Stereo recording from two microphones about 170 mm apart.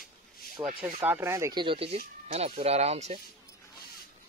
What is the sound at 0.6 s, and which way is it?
Speech, 25° right (ahead or behind).